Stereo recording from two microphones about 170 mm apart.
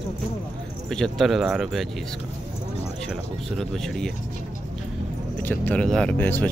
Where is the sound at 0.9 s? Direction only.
Centre (ahead or behind).